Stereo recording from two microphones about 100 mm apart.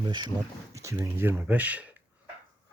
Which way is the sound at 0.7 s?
30° right (ahead or behind).